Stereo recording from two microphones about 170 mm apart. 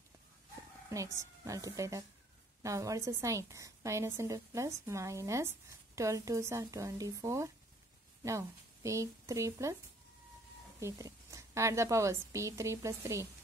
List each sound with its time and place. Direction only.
0.8 s a woman's voice: 20° right (ahead or behind)
10.8 s a woman's voice: 20° right (ahead or behind)